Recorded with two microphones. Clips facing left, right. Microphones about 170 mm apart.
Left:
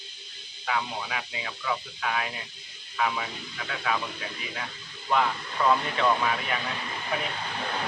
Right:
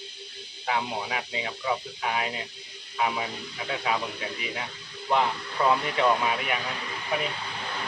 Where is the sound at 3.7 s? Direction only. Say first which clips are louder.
Right 2 dB; 25° right (ahead or behind).